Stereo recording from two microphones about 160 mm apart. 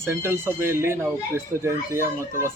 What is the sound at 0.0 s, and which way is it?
A man's voice, 15° right (ahead or behind).